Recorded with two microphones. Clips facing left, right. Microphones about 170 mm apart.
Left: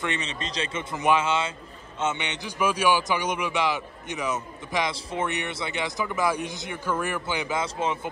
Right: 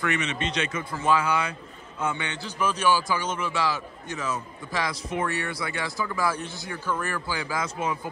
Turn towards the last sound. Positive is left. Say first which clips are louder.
# left 2 dB
turn(degrees=25)  # may be behind; listen again after turning